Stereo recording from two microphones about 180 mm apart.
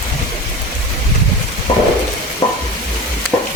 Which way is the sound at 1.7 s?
25° left (ahead or behind).